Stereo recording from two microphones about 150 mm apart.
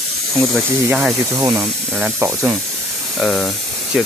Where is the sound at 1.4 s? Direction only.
20° right (ahead or behind).